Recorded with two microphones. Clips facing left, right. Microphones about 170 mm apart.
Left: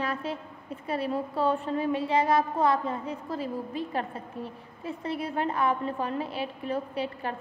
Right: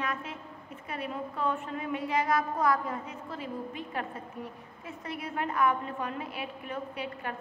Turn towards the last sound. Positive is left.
turn(degrees=30)  # may be behind; listen again after turning